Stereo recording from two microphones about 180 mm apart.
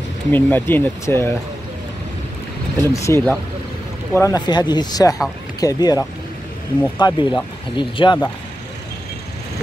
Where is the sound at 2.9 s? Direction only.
15° left (ahead or behind).